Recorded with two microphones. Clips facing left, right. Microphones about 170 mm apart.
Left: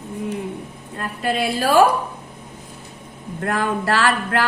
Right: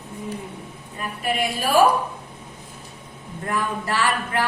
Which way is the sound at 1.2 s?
90° left.